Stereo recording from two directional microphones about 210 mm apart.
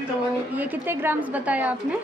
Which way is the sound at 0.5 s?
10° right (ahead or behind).